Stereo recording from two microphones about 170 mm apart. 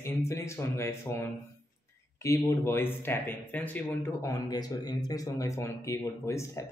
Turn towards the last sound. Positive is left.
turn(degrees=15)  # may be behind; listen again after turning